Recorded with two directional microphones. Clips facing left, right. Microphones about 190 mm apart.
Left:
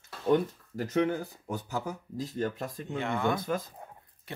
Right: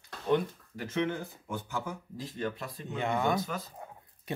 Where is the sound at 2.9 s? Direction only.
15° right (ahead or behind).